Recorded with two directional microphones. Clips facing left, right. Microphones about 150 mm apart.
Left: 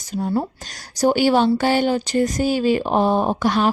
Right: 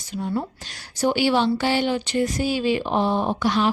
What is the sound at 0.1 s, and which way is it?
A woman's voice, 40° left (ahead or behind).